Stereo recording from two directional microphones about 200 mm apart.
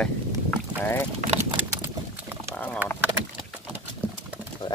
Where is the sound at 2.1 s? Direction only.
10° right (ahead or behind).